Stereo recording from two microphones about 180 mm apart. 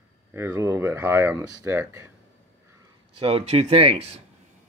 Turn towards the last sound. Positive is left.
turn(degrees=-35)  # may be behind; listen again after turning